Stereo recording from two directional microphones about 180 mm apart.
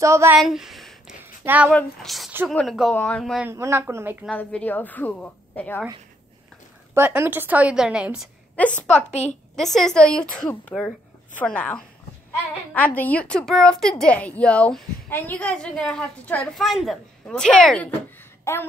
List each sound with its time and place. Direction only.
0.0 s a woman's voice: 15° right (ahead or behind)
0.4 s a sound: centre (ahead or behind)
1.7 s a woman's voice: 5° left (ahead or behind)
3.4 s a woman's voice: 15° right (ahead or behind)
4.3 s a woman's voice: 5° left (ahead or behind)
6.9 s a woman's voice: 10° right (ahead or behind)
8.5 s a woman's voice: 10° left (ahead or behind)
18.4 s a sound: 15° left (ahead or behind)